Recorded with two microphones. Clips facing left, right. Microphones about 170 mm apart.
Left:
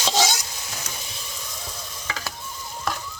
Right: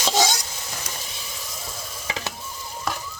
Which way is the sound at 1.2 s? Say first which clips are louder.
Right 1 dB; centre (ahead or behind).